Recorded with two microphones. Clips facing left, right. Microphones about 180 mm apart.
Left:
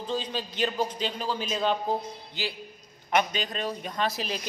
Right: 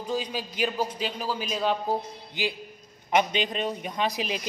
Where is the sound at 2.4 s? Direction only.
15° right (ahead or behind).